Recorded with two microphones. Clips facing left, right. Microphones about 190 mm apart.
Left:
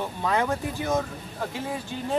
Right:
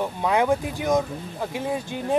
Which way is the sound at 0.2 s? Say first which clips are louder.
Right 4 dB; 15° right (ahead or behind).